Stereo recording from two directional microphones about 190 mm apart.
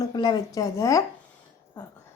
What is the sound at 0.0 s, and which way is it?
Speech, 25° left (ahead or behind).